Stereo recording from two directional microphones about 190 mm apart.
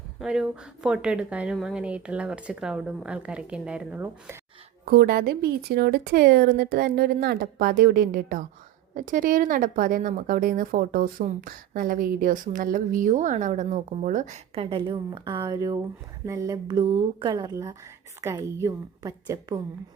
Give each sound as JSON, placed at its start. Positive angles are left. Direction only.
{"t": 0.2, "sound": "a woman's voice", "side_deg": -5}
{"t": 4.9, "sound": "a woman's voice", "side_deg": -50}